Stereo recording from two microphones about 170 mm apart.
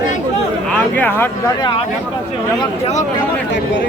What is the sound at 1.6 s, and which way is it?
Speech, 30° left (ahead or behind).